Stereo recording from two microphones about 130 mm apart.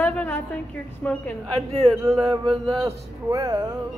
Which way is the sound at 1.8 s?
30° right (ahead or behind).